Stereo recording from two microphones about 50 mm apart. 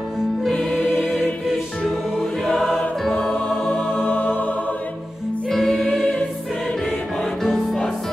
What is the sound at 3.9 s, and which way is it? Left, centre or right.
Music, left.